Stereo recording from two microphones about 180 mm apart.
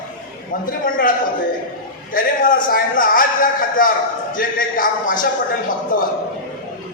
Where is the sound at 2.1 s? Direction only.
50° left (ahead or behind).